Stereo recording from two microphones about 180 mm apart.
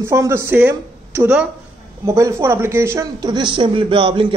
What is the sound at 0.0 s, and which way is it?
A man's voice, 15° right (ahead or behind).